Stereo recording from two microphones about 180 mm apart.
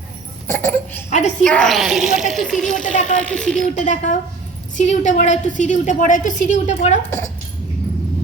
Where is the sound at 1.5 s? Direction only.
5° left (ahead or behind).